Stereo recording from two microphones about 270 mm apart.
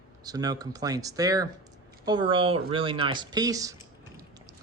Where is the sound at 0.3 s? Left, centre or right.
Centre.